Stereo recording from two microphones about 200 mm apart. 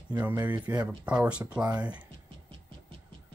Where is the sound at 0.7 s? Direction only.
10° right (ahead or behind).